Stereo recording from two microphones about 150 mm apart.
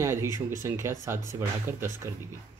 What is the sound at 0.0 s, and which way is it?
Speech, 15° right (ahead or behind).